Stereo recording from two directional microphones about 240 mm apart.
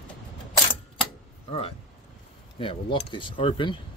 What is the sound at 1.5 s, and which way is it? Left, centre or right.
Speech, left.